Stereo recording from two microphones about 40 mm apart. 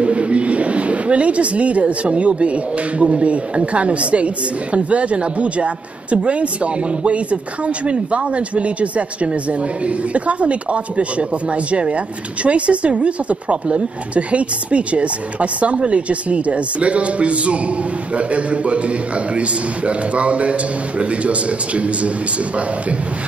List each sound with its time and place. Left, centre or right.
0.0 s speech: right